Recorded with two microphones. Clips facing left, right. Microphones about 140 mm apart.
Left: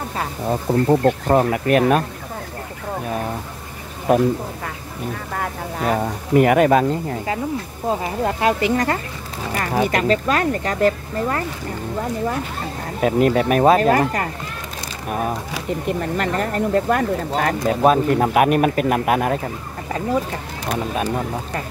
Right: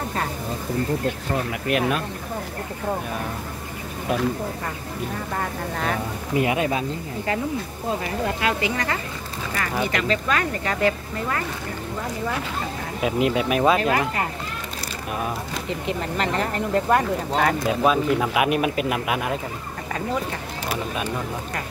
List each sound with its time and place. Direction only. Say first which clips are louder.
0.5 s speech: left 12 dB; 65° left (ahead or behind)
1.5 s speech: left 7 dB; 40° left (ahead or behind)
5.3 s speech: left 1 dB; 10° left (ahead or behind)
5.9 s speech: left 7 dB; 55° left (ahead or behind)
8.0 s speech: left 5 dB; 35° left (ahead or behind)
13.0 s speech: left 5 dB; 45° left (ahead or behind)